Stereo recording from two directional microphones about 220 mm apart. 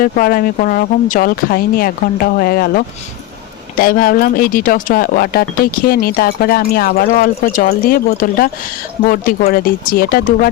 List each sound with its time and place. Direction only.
0.0 s speech: 40° left (ahead or behind)